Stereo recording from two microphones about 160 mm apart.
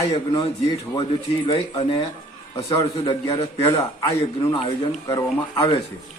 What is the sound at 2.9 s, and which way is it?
A man's voice, 35° left (ahead or behind).